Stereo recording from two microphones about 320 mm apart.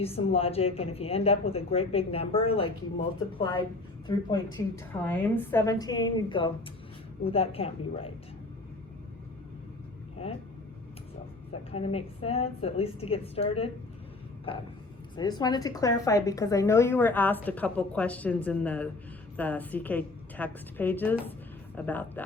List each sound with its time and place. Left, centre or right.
0.0 s a woman's voice: centre
11.7 s a woman's voice: centre